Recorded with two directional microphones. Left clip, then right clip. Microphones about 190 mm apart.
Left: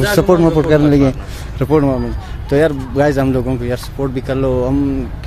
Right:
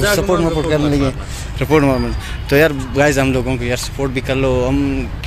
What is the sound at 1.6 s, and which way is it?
Speech, 20° left (ahead or behind).